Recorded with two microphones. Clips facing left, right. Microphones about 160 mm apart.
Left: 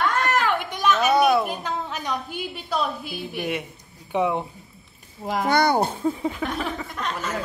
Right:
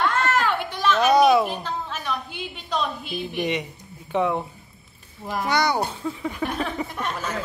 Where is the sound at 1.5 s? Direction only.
15° left (ahead or behind).